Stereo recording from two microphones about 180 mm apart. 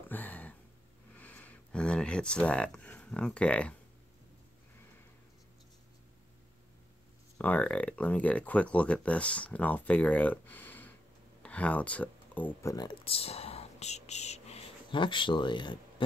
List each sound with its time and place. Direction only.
0.1 s a sound: 10° left (ahead or behind)
1.1 s speech: 10° left (ahead or behind)
7.3 s speech: 10° left (ahead or behind)
12.7 s speech: 25° left (ahead or behind)